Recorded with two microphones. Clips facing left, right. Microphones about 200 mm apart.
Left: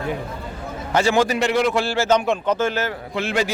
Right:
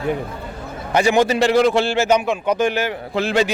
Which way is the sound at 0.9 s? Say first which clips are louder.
Right 2 dB; 15° right (ahead or behind).